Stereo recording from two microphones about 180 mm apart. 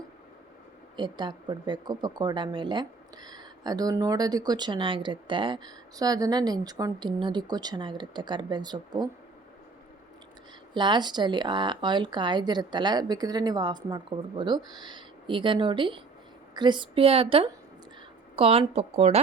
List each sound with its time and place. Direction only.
0.9 s speech: 25° right (ahead or behind)
10.8 s speech: 25° right (ahead or behind)